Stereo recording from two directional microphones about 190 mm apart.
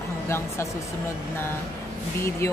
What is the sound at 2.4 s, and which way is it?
Speech, 15° left (ahead or behind).